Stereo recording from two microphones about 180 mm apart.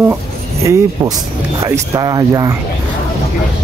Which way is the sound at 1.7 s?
20° right (ahead or behind).